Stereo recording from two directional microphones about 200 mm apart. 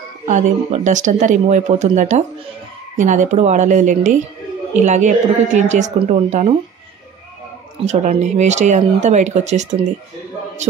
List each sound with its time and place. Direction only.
0.3 s speech: 40° right (ahead or behind)
7.8 s speech: 35° right (ahead or behind)